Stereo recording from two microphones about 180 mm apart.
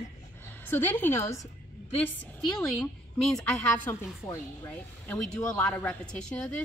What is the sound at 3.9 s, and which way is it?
A woman's voice, 15° left (ahead or behind).